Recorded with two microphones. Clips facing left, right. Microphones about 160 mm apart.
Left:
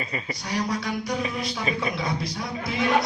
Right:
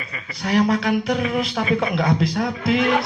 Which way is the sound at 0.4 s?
60° right (ahead or behind).